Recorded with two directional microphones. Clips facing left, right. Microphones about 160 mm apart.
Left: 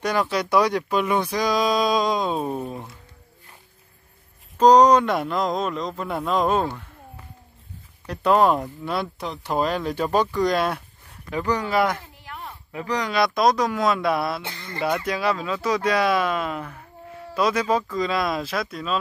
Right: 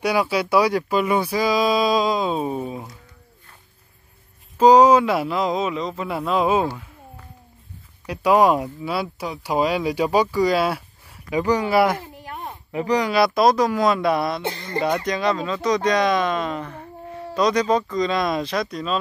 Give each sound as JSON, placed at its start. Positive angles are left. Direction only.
{"t": 0.0, "sound": "speech", "side_deg": -10}
{"t": 4.6, "sound": "speech", "side_deg": -5}
{"t": 8.1, "sound": "speech", "side_deg": -10}
{"t": 12.2, "sound": "a sound", "side_deg": -45}
{"t": 12.7, "sound": "speech", "side_deg": -15}